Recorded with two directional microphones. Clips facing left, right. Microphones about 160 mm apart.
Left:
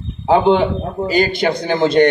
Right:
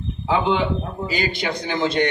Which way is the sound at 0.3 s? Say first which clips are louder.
Left 7 dB; 50° left (ahead or behind).